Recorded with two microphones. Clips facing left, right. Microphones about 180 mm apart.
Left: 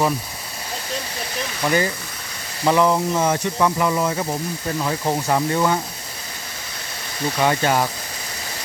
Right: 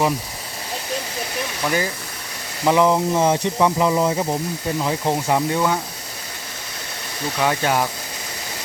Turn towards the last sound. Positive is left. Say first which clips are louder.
# left 1 dB
turn(degrees=-5)  # may be behind; listen again after turning